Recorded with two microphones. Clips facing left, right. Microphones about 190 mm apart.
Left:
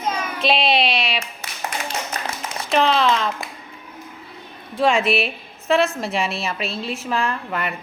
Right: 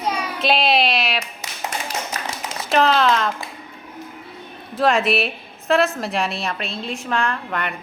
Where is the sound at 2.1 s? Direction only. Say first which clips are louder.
Left 1 dB; 30° left (ahead or behind).